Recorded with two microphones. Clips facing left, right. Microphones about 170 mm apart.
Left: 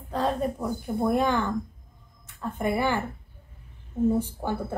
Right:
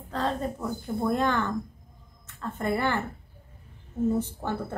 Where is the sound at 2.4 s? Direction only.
15° left (ahead or behind).